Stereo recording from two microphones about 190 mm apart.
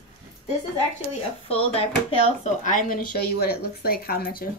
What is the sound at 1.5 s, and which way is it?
Speech, 30° left (ahead or behind).